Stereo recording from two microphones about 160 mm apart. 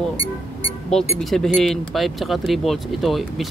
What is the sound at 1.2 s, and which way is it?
Speech, centre (ahead or behind).